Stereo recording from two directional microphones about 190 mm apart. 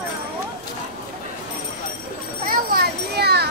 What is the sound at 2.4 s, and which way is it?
A child's voice, 55° right (ahead or behind).